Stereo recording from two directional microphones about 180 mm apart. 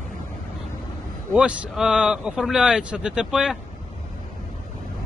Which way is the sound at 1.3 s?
5° right (ahead or behind).